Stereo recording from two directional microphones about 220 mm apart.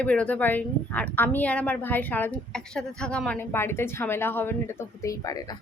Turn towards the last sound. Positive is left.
turn(degrees=15)  # may be behind; listen again after turning